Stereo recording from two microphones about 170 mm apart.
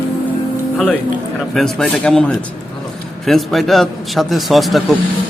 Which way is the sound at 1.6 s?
5° left (ahead or behind).